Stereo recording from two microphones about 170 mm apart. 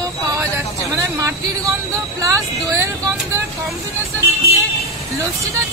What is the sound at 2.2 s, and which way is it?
Speech, 15° right (ahead or behind).